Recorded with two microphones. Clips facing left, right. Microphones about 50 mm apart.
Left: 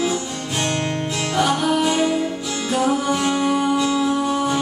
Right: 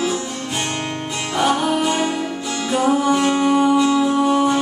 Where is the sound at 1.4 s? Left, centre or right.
Centre.